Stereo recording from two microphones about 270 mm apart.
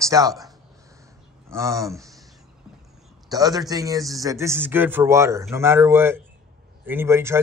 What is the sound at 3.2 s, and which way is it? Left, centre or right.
Speech, centre.